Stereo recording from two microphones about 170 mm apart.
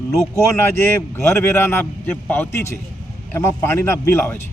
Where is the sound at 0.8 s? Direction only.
15° left (ahead or behind).